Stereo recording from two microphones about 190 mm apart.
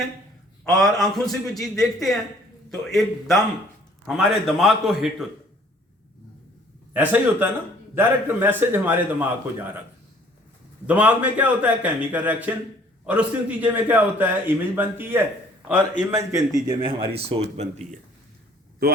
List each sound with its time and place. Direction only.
0.6 s a man's voice: centre (ahead or behind)
6.9 s a man's voice: 10° right (ahead or behind)
10.8 s a man's voice: 10° right (ahead or behind); by 17.8 s 35° right (ahead or behind)